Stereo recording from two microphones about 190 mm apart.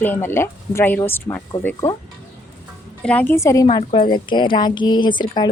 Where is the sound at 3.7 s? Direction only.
25° left (ahead or behind).